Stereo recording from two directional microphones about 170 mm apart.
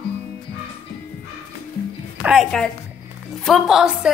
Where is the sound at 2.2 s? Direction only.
5° right (ahead or behind).